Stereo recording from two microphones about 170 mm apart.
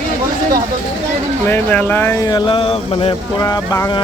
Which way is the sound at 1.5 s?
10° left (ahead or behind).